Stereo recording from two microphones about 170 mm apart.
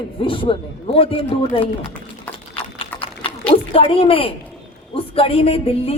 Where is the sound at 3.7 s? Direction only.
30° left (ahead or behind).